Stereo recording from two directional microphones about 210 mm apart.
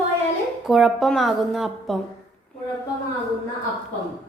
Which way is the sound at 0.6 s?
Centre (ahead or behind).